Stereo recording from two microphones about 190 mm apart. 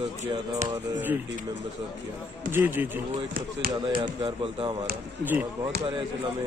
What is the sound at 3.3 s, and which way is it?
Speech, 50° right (ahead or behind).